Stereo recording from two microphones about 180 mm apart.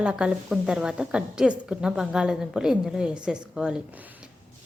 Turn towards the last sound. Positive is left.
turn(degrees=-5)  # may be behind; listen again after turning